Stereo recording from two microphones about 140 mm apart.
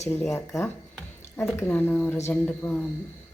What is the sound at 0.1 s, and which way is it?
Speech, 15° left (ahead or behind).